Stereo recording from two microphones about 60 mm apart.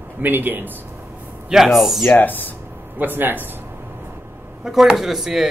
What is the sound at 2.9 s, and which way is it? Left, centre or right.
Speech, right.